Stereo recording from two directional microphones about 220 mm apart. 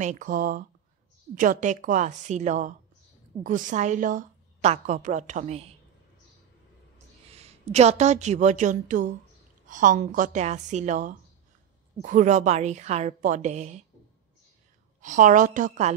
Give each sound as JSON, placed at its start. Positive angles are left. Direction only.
{"t": 0.0, "sound": "a woman's voice", "side_deg": -35}
{"t": 7.2, "sound": "a woman's voice", "side_deg": -30}
{"t": 15.0, "sound": "a woman's voice", "side_deg": -35}